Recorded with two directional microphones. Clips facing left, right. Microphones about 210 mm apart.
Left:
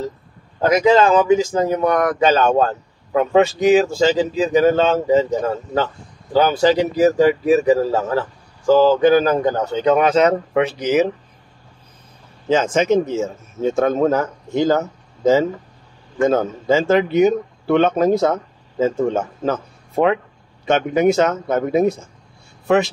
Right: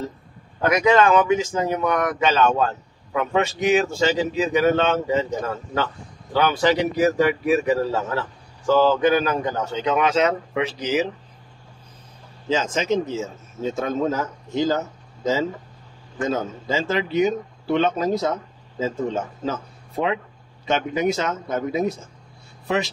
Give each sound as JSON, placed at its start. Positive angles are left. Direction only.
{"t": 0.6, "sound": "speech", "side_deg": 30}
{"t": 8.7, "sound": "speech", "side_deg": 35}
{"t": 12.4, "sound": "speech", "side_deg": 55}
{"t": 16.2, "sound": "speech", "side_deg": 55}
{"t": 20.6, "sound": "speech", "side_deg": 50}